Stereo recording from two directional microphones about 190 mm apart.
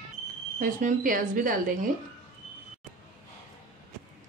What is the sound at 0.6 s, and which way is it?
Speech, 45° right (ahead or behind).